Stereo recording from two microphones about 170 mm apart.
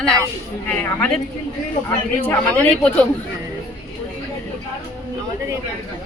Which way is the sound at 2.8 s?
5° left (ahead or behind).